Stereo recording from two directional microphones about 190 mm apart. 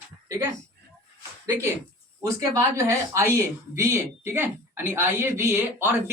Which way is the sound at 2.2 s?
20° right (ahead or behind).